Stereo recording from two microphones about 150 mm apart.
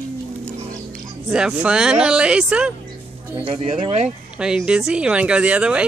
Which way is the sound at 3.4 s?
35° right (ahead or behind).